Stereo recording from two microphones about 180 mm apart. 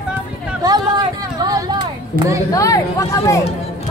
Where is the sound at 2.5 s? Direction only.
20° left (ahead or behind).